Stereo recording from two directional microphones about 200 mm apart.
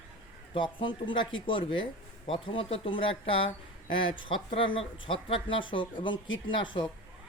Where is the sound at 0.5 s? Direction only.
25° left (ahead or behind).